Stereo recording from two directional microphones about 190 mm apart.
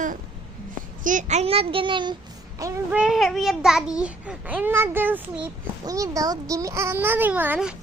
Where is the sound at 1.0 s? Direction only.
40° right (ahead or behind).